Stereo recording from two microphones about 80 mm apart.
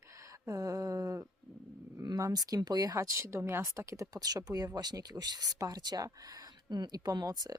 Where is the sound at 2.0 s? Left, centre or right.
Right.